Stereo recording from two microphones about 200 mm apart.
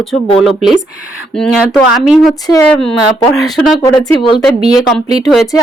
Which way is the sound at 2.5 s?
15° left (ahead or behind).